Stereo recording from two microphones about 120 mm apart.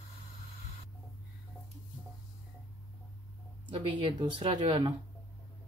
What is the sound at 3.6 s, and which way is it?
Speech, 40° right (ahead or behind).